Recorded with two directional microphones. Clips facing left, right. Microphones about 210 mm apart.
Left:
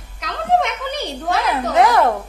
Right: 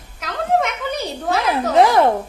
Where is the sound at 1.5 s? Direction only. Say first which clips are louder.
Right 2 dB; 30° right (ahead or behind).